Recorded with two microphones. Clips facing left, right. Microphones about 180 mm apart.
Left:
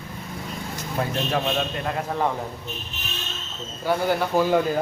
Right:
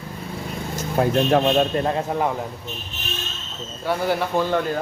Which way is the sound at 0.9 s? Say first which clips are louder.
Right 7 dB; 45° right (ahead or behind).